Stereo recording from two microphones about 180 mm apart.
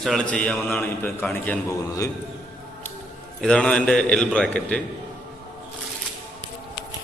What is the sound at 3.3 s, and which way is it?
A man's voice, 5° left (ahead or behind).